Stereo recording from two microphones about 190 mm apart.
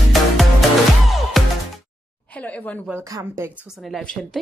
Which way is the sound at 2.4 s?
10° left (ahead or behind).